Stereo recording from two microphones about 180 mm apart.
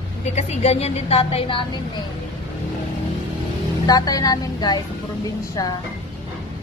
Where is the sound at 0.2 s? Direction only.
40° left (ahead or behind).